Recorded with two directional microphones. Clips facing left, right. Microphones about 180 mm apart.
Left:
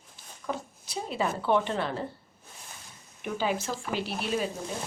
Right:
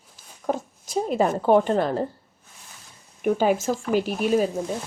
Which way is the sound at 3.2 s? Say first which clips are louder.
Right 9 dB; 45° right (ahead or behind).